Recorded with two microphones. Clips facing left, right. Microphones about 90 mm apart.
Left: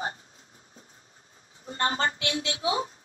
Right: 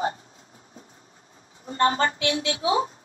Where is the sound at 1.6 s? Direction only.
35° right (ahead or behind).